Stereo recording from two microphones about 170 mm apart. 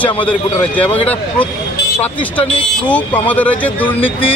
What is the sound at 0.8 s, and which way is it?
Speech, 35° left (ahead or behind).